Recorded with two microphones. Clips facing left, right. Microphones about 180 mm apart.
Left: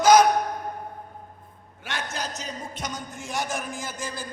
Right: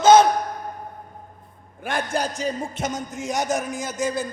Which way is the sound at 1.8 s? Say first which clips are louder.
Right 8 dB; 50° right (ahead or behind).